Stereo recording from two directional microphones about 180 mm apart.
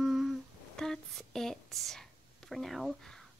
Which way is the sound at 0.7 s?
Centre (ahead or behind).